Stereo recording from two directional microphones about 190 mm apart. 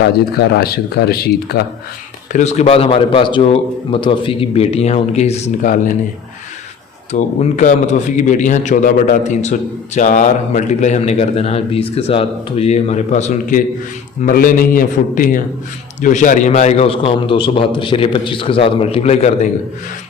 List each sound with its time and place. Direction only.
0.0 s speech: 60° left (ahead or behind)
2.3 s a man's voice: 35° left (ahead or behind)
7.1 s a man's voice: 40° left (ahead or behind)